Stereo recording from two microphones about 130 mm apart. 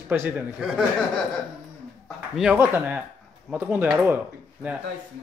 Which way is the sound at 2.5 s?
15° right (ahead or behind).